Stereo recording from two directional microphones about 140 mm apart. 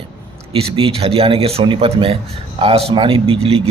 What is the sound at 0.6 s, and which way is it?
Speech, 40° right (ahead or behind).